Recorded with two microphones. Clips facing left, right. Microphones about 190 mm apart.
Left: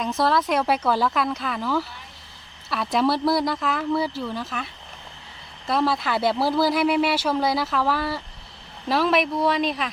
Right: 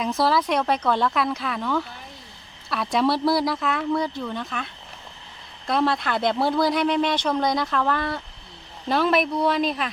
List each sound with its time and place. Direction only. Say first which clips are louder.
0.0 s speech: even; centre (ahead or behind)